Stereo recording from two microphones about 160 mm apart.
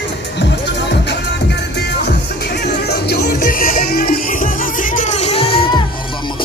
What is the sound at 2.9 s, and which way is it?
Music, 90° left.